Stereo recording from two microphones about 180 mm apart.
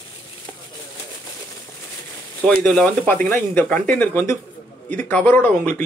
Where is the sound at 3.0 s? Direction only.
10° left (ahead or behind).